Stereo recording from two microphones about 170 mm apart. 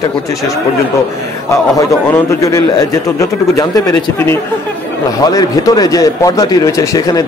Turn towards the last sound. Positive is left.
turn(degrees=20)  # may be behind; listen again after turning